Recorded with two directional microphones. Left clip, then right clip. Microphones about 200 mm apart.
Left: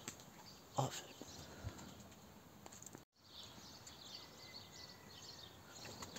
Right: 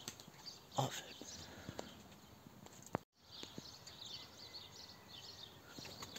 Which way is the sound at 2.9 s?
45° right (ahead or behind).